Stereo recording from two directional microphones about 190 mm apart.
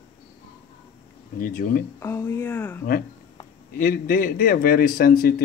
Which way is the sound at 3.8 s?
50° left (ahead or behind).